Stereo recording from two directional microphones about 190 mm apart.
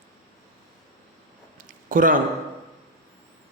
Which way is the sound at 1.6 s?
45° right (ahead or behind).